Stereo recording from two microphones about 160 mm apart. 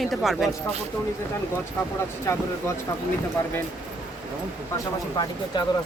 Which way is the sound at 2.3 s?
15° left (ahead or behind).